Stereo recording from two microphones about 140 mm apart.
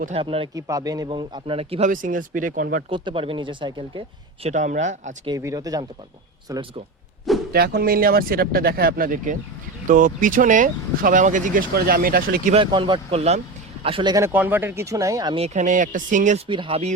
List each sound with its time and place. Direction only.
0.1 s a man's voice: 40° right (ahead or behind)
0.5 s a man's voice: 25° right (ahead or behind); by 1.8 s 40° right (ahead or behind)
1.8 s speech: 70° right (ahead or behind)
2.9 s a man's voice: 35° right (ahead or behind)
4.4 s speech: 60° right (ahead or behind)
5.4 s speech: 25° right (ahead or behind)
7.5 s speech: 90° right
12.5 s speech: 35° right (ahead or behind)
13.8 s a man's voice: 35° right (ahead or behind)
14.2 s speech: 15° right (ahead or behind)
15.4 s speech: 55° right (ahead or behind)
16.5 s a man's voice: 40° right (ahead or behind)